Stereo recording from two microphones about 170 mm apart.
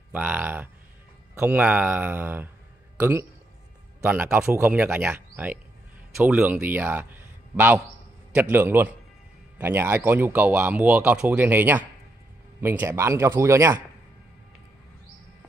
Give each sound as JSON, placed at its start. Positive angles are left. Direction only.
{"t": 0.1, "sound": "a man's voice", "side_deg": -10}